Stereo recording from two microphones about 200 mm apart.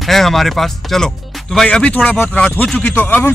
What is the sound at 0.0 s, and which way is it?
Speech, centre (ahead or behind).